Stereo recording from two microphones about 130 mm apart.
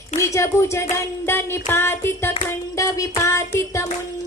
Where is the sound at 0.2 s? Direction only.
20° left (ahead or behind).